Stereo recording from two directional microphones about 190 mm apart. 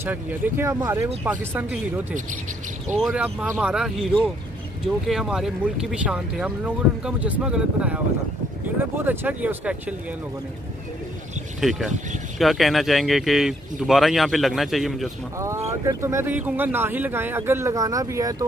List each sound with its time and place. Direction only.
0.0 s speech: 10° right (ahead or behind)
11.6 s speech: centre (ahead or behind)
15.3 s speech: 15° right (ahead or behind)